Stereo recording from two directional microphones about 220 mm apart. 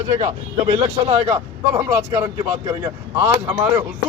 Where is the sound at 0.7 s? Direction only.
30° right (ahead or behind).